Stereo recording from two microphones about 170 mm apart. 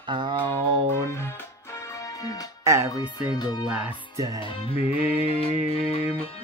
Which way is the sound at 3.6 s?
10° right (ahead or behind).